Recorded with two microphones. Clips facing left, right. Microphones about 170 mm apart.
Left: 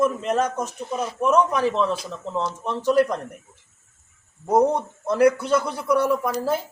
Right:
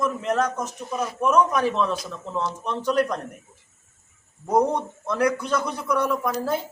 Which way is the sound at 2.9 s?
5° left (ahead or behind).